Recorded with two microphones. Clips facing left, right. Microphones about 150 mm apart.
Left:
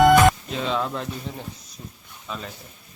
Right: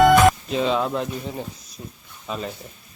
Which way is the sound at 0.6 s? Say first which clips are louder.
Right 4 dB; 15° right (ahead or behind).